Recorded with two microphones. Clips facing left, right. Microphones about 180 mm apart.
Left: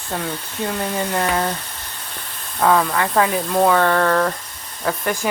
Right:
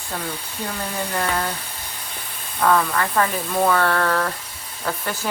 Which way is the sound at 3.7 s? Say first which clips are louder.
Left 3 dB; 15° left (ahead or behind).